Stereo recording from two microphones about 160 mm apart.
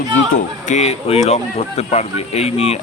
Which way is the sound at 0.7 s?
40° left (ahead or behind).